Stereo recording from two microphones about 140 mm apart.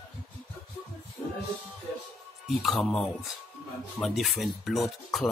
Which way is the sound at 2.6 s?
Centre (ahead or behind).